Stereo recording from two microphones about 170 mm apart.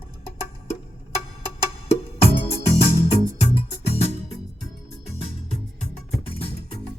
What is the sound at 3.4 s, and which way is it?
Music, 40° left (ahead or behind).